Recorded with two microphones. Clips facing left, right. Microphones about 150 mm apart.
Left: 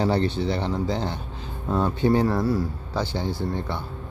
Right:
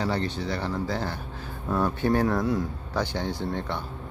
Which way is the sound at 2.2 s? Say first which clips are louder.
Left 2 dB; 5° left (ahead or behind).